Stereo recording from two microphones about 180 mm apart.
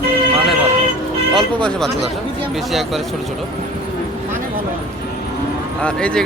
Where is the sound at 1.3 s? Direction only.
5° left (ahead or behind).